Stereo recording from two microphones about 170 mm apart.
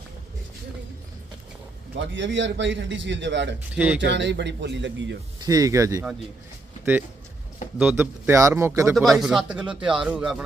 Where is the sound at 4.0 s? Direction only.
90° right.